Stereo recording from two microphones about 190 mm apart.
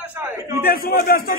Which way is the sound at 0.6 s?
50° left (ahead or behind).